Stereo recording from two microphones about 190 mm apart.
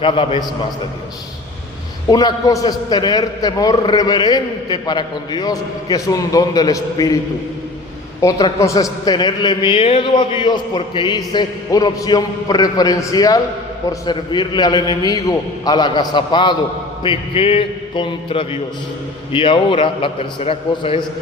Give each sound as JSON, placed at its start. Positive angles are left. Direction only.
{"t": 0.0, "sound": "a man's voice", "side_deg": 25}
{"t": 2.0, "sound": "a man's voice", "side_deg": 20}
{"t": 8.2, "sound": "a man's voice", "side_deg": 20}